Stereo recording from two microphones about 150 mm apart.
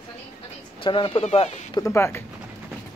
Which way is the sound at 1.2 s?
45° left (ahead or behind).